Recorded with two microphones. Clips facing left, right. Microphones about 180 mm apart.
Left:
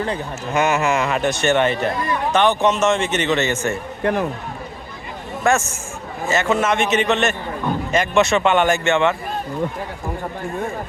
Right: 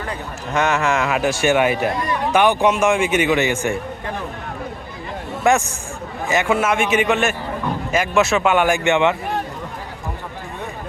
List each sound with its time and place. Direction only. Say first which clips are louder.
0.5 s a man's voice: left 1 dB; 5° left (ahead or behind); by 3.8 s 10° right (ahead or behind)
5.4 s a man's voice: right 1 dB; 15° right (ahead or behind)